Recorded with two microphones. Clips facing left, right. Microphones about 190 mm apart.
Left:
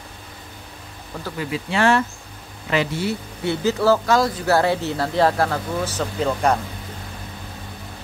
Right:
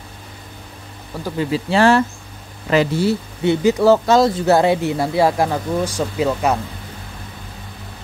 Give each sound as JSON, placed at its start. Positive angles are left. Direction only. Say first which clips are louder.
{"t": 1.4, "sound": "speech", "louder": "right 5 dB", "side_deg": -35}
{"t": 3.4, "sound": "speech", "louder": "right 5 dB", "side_deg": -20}